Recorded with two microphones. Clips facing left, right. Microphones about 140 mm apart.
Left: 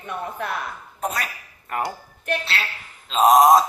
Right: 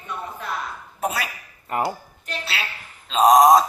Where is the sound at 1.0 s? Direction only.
5° right (ahead or behind).